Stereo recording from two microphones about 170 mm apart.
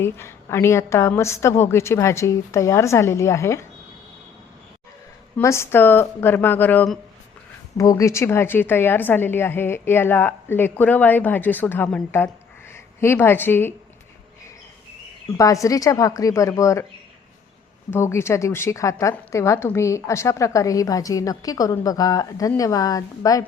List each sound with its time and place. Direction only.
0.0 s a woman's voice: 15° left (ahead or behind)
5.4 s a woman's voice: 15° left (ahead or behind)
7.8 s a woman's voice: 20° left (ahead or behind)
15.4 s a woman's voice: 20° left (ahead or behind)
17.9 s a woman's voice: 15° left (ahead or behind)